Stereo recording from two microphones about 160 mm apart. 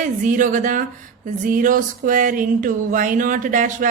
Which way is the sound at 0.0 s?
55° right (ahead or behind).